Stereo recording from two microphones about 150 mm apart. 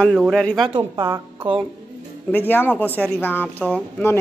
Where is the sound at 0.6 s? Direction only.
35° right (ahead or behind).